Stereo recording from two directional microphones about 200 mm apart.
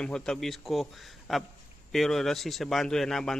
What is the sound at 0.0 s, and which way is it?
A man's voice, 5° left (ahead or behind).